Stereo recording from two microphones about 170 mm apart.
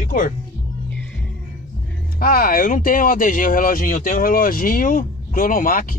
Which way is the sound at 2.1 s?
60° left (ahead or behind).